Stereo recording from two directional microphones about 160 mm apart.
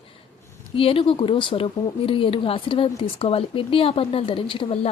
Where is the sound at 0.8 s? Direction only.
35° left (ahead or behind).